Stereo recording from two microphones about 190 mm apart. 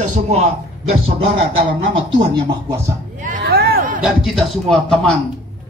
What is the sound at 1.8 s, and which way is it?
Speech, 25° right (ahead or behind).